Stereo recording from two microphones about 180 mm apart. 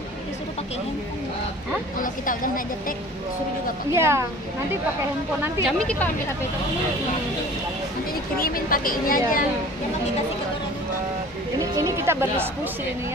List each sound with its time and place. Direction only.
2.0 s a woman's voice: 50° left (ahead or behind)
3.9 s a woman's voice: 15° right (ahead or behind)
5.7 s speech: 5° left (ahead or behind)
8.1 s a woman's voice: 55° left (ahead or behind)
11.6 s sheep: 20° right (ahead or behind)